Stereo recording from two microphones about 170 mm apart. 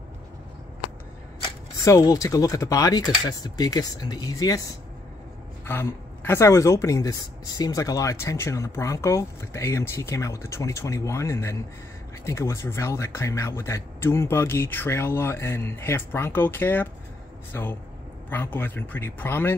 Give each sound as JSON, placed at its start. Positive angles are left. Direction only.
{"t": 1.9, "sound": "speech", "side_deg": 20}
{"t": 5.7, "sound": "speech", "side_deg": 15}